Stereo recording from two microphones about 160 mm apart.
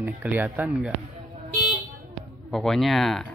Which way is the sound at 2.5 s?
Centre (ahead or behind).